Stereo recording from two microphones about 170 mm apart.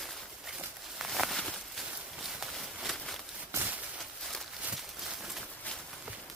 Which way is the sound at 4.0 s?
Centre (ahead or behind).